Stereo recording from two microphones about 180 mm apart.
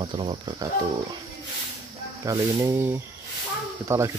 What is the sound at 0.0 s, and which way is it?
Speech, 25° right (ahead or behind).